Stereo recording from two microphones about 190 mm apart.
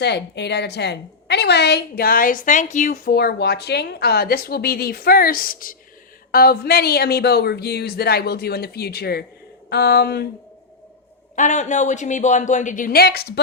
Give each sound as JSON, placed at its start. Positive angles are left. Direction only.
{"t": 0.0, "sound": "a woman's voice", "side_deg": 65}
{"t": 11.3, "sound": "speech", "side_deg": 40}